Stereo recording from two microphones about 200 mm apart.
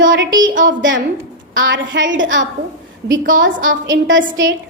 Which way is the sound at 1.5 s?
70° right (ahead or behind).